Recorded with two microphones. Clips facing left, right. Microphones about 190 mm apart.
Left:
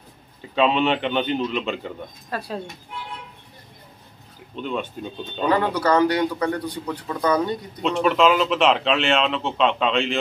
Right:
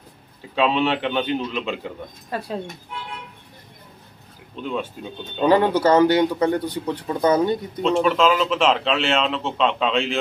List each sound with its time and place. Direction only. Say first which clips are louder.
0.6 s speech: left 1 dB; centre (ahead or behind)
2.3 s a man's voice: right 1 dB; 20° right (ahead or behind)
4.6 s speech: even; centre (ahead or behind)
5.5 s a man's voice: right 4 dB; 25° right (ahead or behind)
7.8 s speech: even; centre (ahead or behind)